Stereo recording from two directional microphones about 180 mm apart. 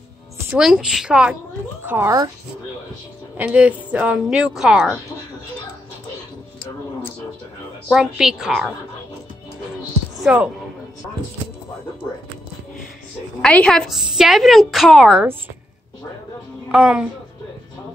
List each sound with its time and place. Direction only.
0.5 s a woman's voice: centre (ahead or behind)
3.3 s a woman's voice: 10° right (ahead or behind)
7.9 s a woman's voice: centre (ahead or behind)
10.1 s speech: 5° right (ahead or behind)
13.4 s a woman's voice: 5° left (ahead or behind)
16.7 s a woman's voice: 5° right (ahead or behind)